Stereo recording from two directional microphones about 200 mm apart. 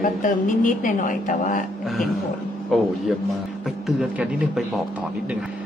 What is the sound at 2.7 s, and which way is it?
Speech, centre (ahead or behind).